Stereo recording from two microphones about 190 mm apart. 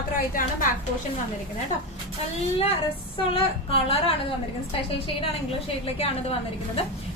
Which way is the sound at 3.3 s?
30° left (ahead or behind).